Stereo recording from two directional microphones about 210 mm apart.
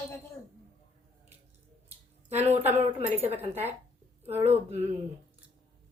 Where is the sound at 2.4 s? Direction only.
30° right (ahead or behind).